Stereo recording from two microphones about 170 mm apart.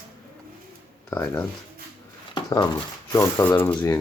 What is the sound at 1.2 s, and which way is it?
Speech, 10° left (ahead or behind).